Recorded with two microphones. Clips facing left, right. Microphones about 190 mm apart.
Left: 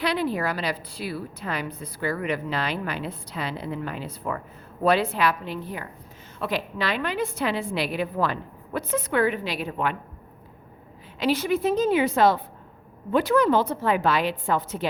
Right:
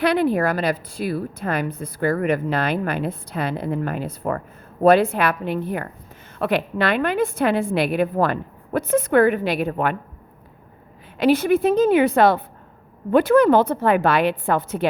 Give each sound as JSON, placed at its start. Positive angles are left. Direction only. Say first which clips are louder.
{"t": 0.0, "sound": "a woman's voice", "louder": "right 7 dB", "side_deg": -55}
{"t": 11.2, "sound": "a woman's voice", "louder": "right 6 dB", "side_deg": -55}